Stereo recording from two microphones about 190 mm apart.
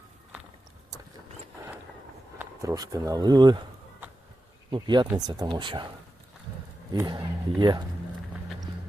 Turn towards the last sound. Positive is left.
turn(degrees=-25)  # may be behind; listen again after turning